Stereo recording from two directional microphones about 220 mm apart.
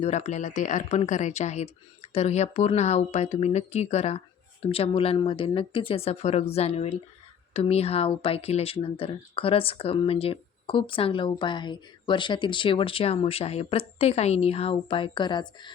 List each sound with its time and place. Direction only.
0.0 s speech: 30° left (ahead or behind)